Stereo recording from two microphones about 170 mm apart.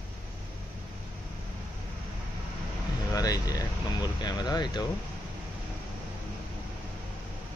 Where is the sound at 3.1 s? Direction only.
20° left (ahead or behind).